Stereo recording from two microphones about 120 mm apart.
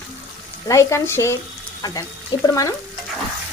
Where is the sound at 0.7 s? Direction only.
25° left (ahead or behind).